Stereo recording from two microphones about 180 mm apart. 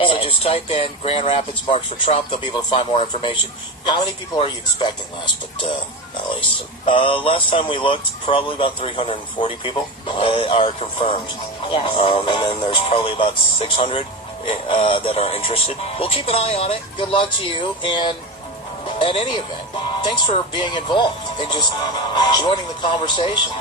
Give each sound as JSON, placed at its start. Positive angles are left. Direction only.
{"t": 0.0, "sound": "speech", "side_deg": 30}
{"t": 6.8, "sound": "speech", "side_deg": 30}